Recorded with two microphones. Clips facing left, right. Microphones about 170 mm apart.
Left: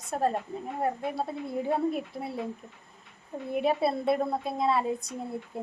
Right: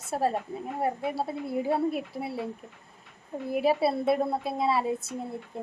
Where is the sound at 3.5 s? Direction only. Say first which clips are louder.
Right 2 dB; 5° right (ahead or behind).